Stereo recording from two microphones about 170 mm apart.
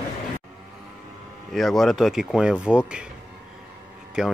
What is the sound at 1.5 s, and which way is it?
Speech, centre (ahead or behind).